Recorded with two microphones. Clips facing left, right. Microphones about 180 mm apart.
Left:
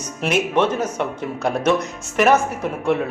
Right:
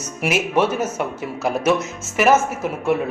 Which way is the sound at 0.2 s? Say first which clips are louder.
Even; 5° right (ahead or behind).